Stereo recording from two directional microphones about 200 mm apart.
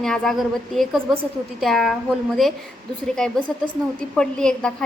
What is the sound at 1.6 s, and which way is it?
Speech, centre (ahead or behind).